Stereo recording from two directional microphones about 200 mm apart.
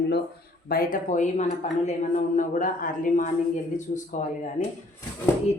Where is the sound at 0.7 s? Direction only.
45° left (ahead or behind).